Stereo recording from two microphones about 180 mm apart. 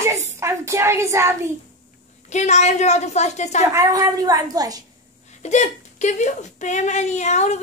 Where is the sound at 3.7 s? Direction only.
20° right (ahead or behind).